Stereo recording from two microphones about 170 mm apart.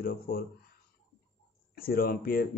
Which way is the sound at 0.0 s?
60° left (ahead or behind).